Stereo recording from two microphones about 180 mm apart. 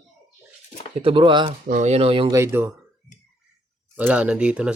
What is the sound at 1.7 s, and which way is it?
Speech, 40° right (ahead or behind).